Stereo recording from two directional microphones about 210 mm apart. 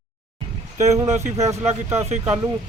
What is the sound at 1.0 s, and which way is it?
Speech, 30° right (ahead or behind).